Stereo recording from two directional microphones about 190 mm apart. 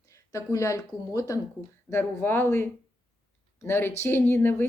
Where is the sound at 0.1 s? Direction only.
15° left (ahead or behind).